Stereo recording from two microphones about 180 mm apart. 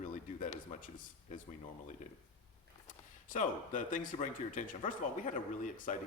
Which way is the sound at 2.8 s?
45° left (ahead or behind).